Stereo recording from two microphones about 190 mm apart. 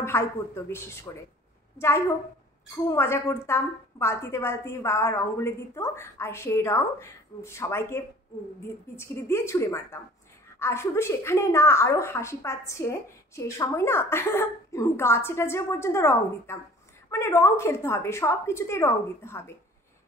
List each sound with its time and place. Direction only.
0.1 s a woman's voice: 10° left (ahead or behind)